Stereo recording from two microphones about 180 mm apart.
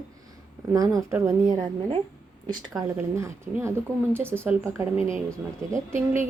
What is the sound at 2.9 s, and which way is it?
A woman's voice, 15° right (ahead or behind).